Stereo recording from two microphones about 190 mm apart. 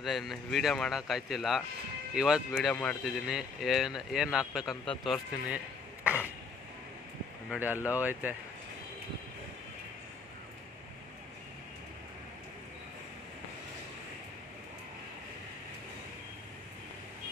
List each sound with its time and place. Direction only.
0.0 s speech: centre (ahead or behind)
7.4 s speech: 10° right (ahead or behind)